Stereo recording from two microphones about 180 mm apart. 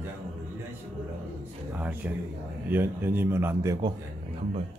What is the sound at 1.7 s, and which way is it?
A man's voice, 10° right (ahead or behind).